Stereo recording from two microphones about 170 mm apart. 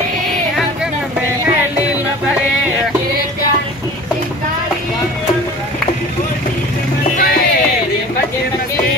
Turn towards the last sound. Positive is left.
turn(degrees=55)  # may be behind; listen again after turning